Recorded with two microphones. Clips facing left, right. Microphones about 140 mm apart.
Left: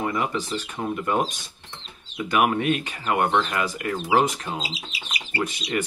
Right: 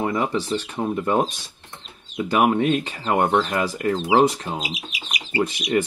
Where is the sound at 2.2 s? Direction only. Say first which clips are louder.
Right 3 dB; 30° right (ahead or behind).